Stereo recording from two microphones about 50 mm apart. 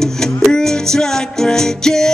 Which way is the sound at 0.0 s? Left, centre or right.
Centre.